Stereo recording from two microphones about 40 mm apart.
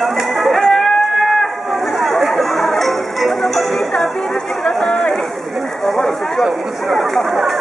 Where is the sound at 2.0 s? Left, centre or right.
Centre.